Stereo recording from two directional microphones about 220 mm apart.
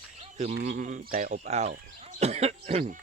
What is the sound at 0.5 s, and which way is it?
Speech, 40° right (ahead or behind).